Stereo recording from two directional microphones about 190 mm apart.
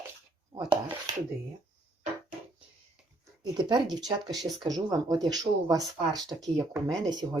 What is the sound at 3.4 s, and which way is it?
Speech, 25° right (ahead or behind).